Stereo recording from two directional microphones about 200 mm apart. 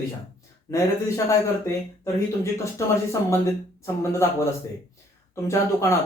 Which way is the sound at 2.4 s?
15° left (ahead or behind).